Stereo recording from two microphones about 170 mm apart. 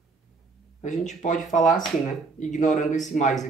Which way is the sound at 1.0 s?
45° left (ahead or behind).